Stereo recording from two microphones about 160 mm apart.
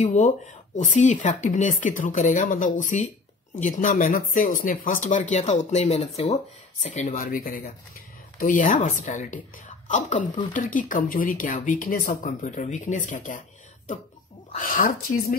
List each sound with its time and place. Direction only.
0.0 s a woman's voice: 50° left (ahead or behind)
14.5 s speech: 55° left (ahead or behind)